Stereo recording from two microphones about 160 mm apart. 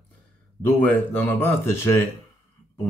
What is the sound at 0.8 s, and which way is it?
Speech, 10° left (ahead or behind).